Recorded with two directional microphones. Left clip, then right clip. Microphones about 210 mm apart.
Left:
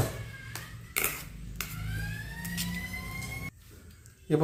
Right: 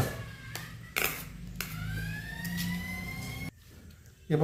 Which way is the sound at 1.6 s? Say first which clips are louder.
Even; 5° left (ahead or behind).